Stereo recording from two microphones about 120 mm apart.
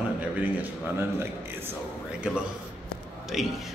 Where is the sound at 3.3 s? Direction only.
Centre (ahead or behind).